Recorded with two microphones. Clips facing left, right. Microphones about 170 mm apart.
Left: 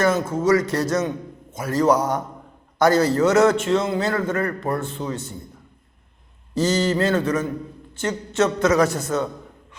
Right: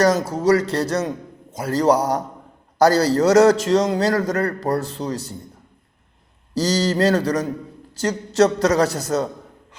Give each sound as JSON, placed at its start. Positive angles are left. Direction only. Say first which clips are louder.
{"t": 0.0, "sound": "a man's voice", "louder": "right 2 dB", "side_deg": -40}
{"t": 6.5, "sound": "a man's voice", "louder": "even", "side_deg": -35}